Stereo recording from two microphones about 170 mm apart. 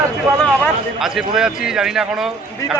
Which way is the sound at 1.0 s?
Centre (ahead or behind).